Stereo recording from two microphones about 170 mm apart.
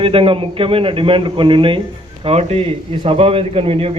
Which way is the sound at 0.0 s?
35° right (ahead or behind).